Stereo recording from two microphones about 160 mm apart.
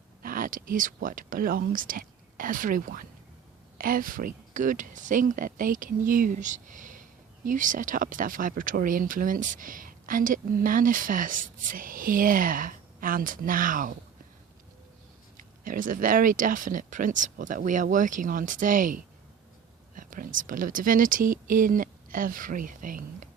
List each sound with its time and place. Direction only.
0.2 s speech: 60° right (ahead or behind)
15.6 s speech: 60° right (ahead or behind)